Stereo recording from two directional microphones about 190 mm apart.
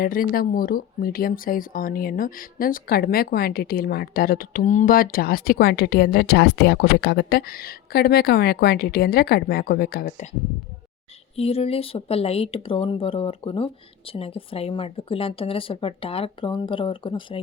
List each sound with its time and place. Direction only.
0.0 s speech: 50° left (ahead or behind)
11.3 s speech: 30° left (ahead or behind)